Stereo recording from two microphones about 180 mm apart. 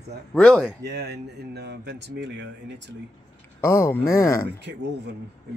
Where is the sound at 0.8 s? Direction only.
65° right (ahead or behind).